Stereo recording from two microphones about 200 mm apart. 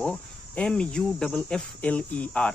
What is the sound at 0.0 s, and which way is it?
Cricket, 5° left (ahead or behind).